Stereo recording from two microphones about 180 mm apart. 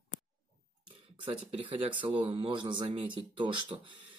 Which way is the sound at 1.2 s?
30° right (ahead or behind).